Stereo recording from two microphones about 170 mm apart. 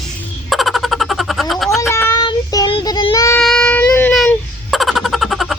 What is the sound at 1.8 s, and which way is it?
Child singing, 15° left (ahead or behind).